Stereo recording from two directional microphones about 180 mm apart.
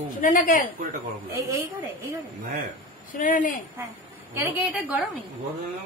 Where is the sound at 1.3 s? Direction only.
15° right (ahead or behind).